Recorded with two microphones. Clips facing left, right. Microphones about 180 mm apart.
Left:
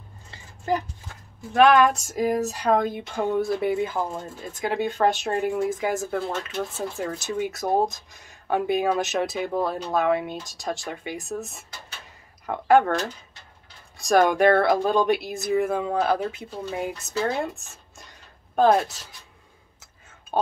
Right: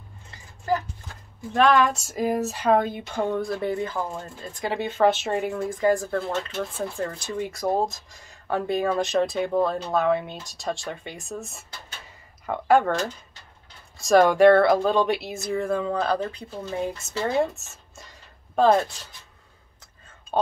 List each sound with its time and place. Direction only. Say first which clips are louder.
0.3 s a sound: even; 20° left (ahead or behind)
1.5 s speech: left 3 dB; 5° left (ahead or behind)
13.9 s speech: right 2 dB; centre (ahead or behind)